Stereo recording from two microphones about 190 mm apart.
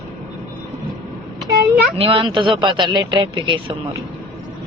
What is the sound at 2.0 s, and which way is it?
Speech, 25° right (ahead or behind).